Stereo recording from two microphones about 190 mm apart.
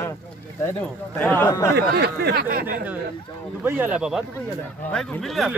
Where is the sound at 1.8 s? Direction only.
60° right (ahead or behind).